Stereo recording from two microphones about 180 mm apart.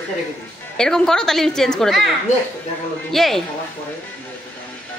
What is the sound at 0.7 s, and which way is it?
Speech, 5° left (ahead or behind).